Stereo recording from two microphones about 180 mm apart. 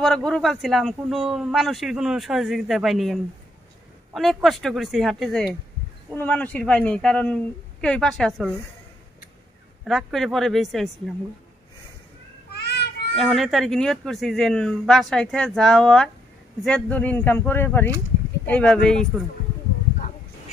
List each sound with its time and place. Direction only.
0.0 s speech: 5° left (ahead or behind)
9.8 s speech: centre (ahead or behind)
12.5 s child singing: 65° left (ahead or behind)
13.1 s speech: centre (ahead or behind)